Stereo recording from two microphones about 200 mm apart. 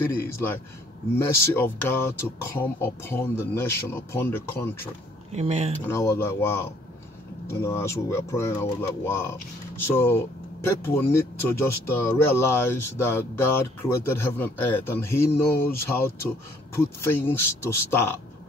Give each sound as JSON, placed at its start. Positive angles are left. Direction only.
{"t": 0.0, "sound": "speech", "side_deg": 10}
{"t": 5.3, "sound": "speech", "side_deg": -30}
{"t": 5.9, "sound": "speech", "side_deg": 15}